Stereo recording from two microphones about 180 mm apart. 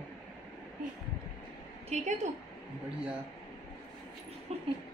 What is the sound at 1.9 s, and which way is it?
Speech, 40° right (ahead or behind).